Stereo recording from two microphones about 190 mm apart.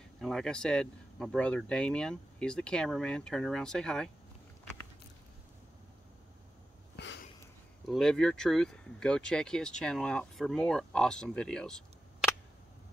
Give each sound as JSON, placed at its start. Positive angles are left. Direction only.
{"t": 0.2, "sound": "speech", "side_deg": 5}
{"t": 7.0, "sound": "a sound", "side_deg": 60}
{"t": 7.9, "sound": "speech", "side_deg": 5}